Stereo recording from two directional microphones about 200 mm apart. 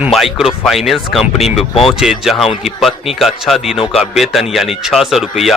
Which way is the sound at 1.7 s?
30° left (ahead or behind).